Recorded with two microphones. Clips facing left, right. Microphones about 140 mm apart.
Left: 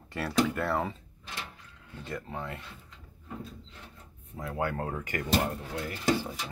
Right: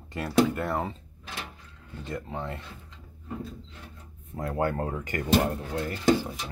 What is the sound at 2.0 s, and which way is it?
Speech, 20° right (ahead or behind).